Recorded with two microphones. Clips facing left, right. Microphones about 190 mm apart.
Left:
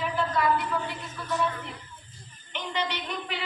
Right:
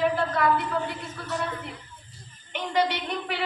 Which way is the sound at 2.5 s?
60° right (ahead or behind).